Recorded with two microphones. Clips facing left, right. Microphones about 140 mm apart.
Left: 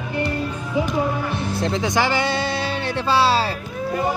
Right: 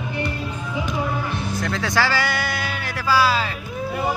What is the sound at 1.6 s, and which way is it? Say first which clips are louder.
Speech: left 2 dB; 20° left (ahead or behind).